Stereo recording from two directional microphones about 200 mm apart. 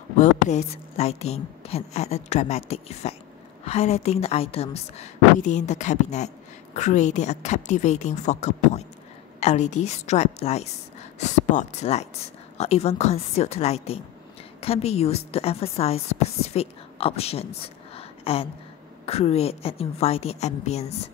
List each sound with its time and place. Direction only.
0.2 s a woman's voice: 35° left (ahead or behind)